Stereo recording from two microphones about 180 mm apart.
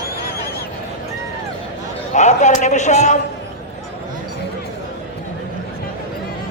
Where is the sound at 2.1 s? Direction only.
40° left (ahead or behind).